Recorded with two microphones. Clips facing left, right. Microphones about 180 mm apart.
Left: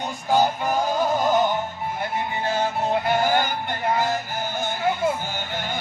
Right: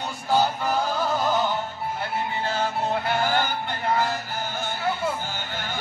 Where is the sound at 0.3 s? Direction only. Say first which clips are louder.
Left 2 dB; 15° left (ahead or behind).